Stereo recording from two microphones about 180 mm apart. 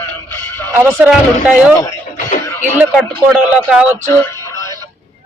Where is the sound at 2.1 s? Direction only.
45° left (ahead or behind).